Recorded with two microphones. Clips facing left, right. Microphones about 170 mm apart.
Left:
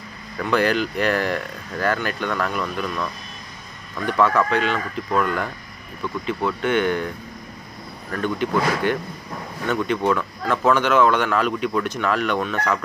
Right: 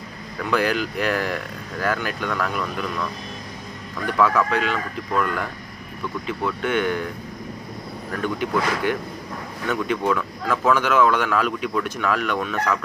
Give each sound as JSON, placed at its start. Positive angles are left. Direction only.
{"t": 0.4, "sound": "speech", "side_deg": -5}
{"t": 8.1, "sound": "speech", "side_deg": -5}